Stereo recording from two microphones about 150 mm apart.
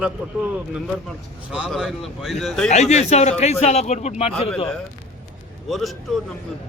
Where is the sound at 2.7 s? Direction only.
50° left (ahead or behind).